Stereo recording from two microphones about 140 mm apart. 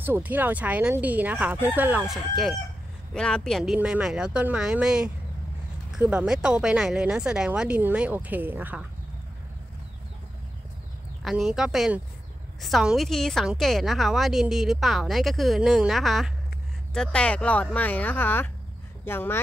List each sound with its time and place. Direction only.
0.0 s speech: 15° right (ahead or behind)
2.0 s a woman's voice: centre (ahead or behind)
11.2 s a woman's voice: 5° right (ahead or behind); by 19.4 s 15° left (ahead or behind)